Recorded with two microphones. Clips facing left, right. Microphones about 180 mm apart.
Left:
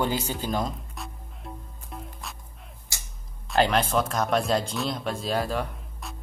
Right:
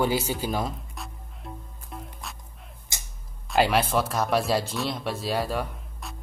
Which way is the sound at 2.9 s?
20° right (ahead or behind).